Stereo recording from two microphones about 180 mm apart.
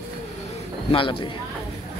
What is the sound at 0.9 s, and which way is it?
Speech, 30° left (ahead or behind).